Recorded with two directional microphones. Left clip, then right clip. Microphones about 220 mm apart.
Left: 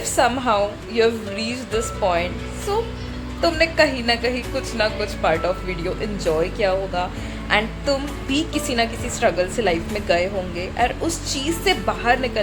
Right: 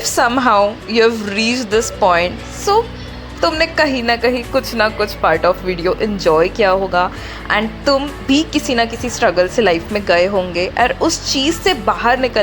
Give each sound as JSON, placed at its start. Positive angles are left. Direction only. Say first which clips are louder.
{"t": 0.2, "sound": "a woman's voice", "louder": "right 6 dB", "side_deg": -20}